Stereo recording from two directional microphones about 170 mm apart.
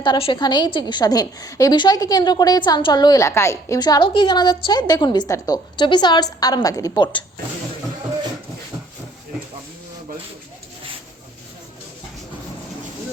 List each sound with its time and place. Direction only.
0.0 s a woman's voice: 30° left (ahead or behind)